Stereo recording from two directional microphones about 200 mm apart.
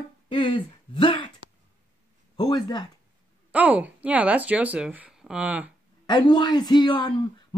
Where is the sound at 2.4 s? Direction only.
20° left (ahead or behind).